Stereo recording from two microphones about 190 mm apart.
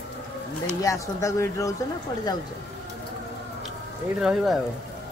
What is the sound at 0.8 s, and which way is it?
Speech, 15° left (ahead or behind).